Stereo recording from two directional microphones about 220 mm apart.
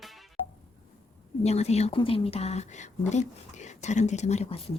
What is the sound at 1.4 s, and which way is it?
A woman's voice, 30° left (ahead or behind).